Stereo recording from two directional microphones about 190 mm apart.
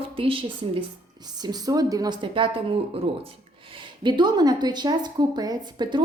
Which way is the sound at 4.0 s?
25° right (ahead or behind).